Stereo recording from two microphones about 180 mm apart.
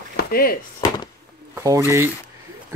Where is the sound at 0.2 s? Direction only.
55° left (ahead or behind).